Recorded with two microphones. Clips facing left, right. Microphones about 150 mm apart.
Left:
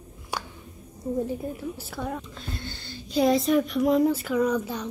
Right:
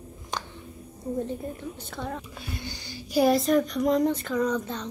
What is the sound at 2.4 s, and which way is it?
Speech, 10° right (ahead or behind).